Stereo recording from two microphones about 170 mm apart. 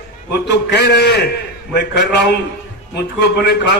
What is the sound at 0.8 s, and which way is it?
Speech, 80° left.